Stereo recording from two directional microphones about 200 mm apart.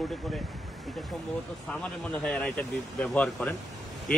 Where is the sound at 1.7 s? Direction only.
5° left (ahead or behind).